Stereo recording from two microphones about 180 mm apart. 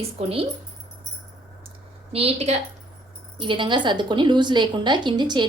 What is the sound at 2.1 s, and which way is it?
A woman's voice, 35° right (ahead or behind).